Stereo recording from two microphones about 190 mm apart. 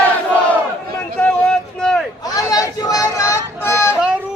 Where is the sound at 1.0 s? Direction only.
5° left (ahead or behind).